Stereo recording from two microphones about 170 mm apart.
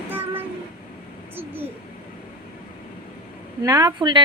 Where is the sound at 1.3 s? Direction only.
10° right (ahead or behind).